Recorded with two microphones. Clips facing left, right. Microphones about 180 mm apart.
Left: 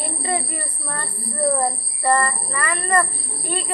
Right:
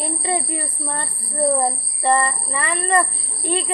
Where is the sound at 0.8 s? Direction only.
25° right (ahead or behind).